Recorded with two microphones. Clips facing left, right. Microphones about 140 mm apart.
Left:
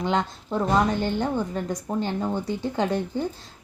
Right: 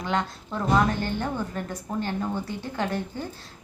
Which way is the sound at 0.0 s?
20° left (ahead or behind).